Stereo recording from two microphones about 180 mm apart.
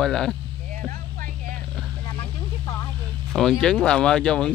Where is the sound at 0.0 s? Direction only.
Centre (ahead or behind).